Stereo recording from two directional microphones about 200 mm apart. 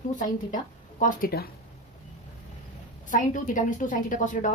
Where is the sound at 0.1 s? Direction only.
40° left (ahead or behind).